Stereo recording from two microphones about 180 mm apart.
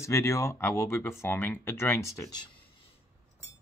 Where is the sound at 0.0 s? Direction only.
15° left (ahead or behind).